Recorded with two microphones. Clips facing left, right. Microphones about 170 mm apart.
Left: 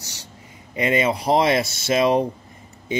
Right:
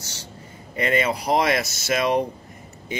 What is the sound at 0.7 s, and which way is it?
Speech, 20° left (ahead or behind).